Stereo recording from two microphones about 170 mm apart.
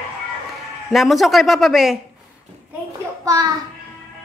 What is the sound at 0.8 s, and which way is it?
A man's voice, centre (ahead or behind).